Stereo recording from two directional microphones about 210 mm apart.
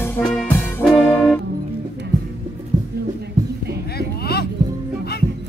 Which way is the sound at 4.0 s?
50° left (ahead or behind).